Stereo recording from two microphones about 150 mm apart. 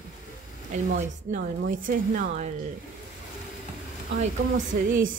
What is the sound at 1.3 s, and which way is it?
Speech, 65° right (ahead or behind).